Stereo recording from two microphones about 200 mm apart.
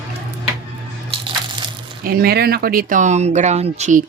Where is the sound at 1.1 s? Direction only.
25° right (ahead or behind).